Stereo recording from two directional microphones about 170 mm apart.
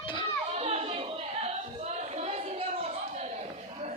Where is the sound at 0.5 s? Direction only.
35° right (ahead or behind).